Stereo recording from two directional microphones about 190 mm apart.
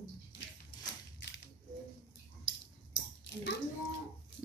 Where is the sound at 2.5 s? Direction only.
70° left (ahead or behind).